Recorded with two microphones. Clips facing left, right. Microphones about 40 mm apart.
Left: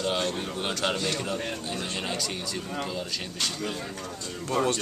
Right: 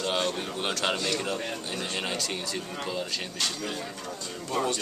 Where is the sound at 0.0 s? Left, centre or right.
Centre.